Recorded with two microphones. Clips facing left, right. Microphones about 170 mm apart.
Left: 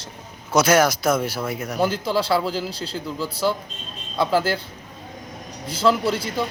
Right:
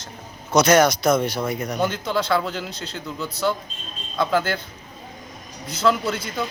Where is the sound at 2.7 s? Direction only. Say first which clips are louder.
Left 3 dB; 30° left (ahead or behind).